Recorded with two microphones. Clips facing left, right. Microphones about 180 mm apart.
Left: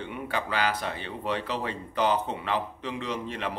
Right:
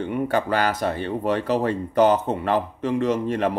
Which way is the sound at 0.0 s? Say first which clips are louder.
Right 9 dB; 45° right (ahead or behind).